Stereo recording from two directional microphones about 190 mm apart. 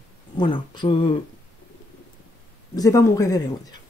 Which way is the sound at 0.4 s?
25° left (ahead or behind).